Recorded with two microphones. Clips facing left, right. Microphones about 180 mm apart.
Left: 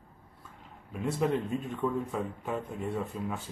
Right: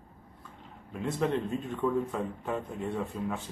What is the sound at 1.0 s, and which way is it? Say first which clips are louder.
Speech: even; 10° left (ahead or behind).